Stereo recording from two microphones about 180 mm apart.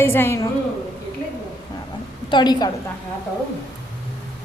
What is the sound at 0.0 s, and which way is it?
Speech, 15° left (ahead or behind).